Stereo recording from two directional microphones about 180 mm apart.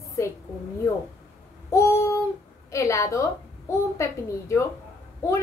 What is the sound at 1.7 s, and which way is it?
A woman's voice, 15° left (ahead or behind).